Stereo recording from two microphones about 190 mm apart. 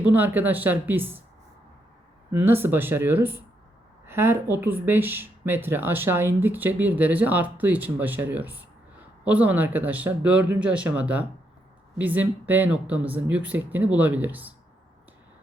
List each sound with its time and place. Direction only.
0.1 s speech: 10° right (ahead or behind)
2.3 s a woman's voice: 10° right (ahead or behind)